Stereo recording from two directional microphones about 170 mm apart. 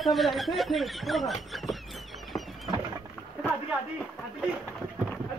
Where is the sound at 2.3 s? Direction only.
20° left (ahead or behind).